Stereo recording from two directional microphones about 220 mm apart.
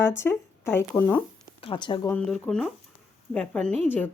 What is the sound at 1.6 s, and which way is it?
Speech, 20° left (ahead or behind).